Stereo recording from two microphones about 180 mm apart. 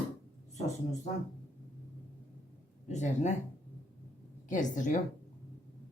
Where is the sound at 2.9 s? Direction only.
40° left (ahead or behind).